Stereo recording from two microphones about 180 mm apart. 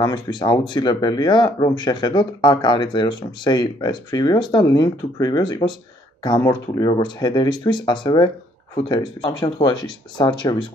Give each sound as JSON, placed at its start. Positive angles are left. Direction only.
{"t": 0.0, "sound": "speech", "side_deg": 25}